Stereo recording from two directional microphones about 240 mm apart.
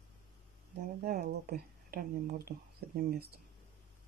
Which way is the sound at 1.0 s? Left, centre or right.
Right.